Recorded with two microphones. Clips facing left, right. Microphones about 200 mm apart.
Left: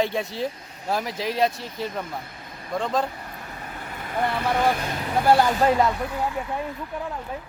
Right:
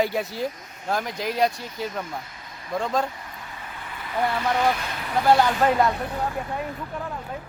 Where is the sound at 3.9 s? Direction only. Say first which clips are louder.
Even; 45° left (ahead or behind).